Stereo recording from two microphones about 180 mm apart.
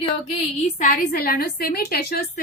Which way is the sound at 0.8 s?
45° left (ahead or behind).